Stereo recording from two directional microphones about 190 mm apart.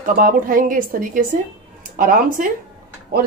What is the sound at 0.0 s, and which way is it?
A woman's voice, 45° right (ahead or behind).